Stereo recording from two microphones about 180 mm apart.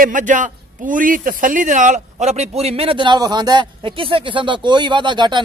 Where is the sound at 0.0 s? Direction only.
45° right (ahead or behind).